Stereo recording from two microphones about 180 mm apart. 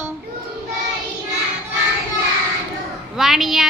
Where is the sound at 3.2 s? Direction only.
Centre (ahead or behind).